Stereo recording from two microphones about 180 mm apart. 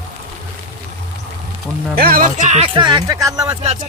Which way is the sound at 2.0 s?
55° right (ahead or behind).